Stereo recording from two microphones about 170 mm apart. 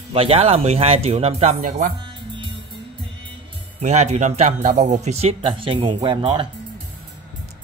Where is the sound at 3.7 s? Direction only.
40° right (ahead or behind).